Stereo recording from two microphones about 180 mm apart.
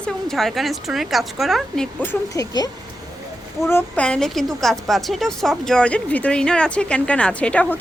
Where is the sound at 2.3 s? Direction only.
20° left (ahead or behind).